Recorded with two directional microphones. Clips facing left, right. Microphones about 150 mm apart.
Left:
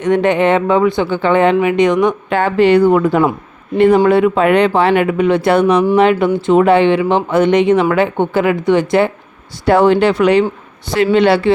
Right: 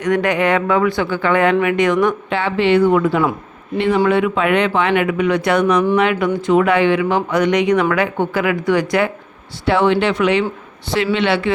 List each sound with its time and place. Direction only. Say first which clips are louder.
0.0 s speech: left 4 dB; 25° left (ahead or behind)
2.3 s speech: left 6 dB; 45° left (ahead or behind); by 9.1 s 25° left (ahead or behind)
9.6 s speech: left 5 dB; 45° left (ahead or behind)